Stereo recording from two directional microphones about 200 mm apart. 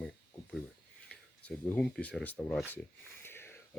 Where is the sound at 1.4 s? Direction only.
5° left (ahead or behind).